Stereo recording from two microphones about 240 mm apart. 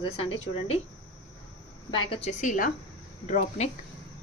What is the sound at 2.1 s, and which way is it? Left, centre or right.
A woman's voice, left.